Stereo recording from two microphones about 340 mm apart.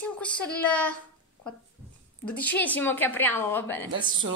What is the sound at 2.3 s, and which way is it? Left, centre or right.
Speech, centre.